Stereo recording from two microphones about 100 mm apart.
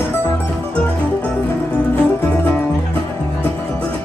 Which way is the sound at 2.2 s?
20° left (ahead or behind).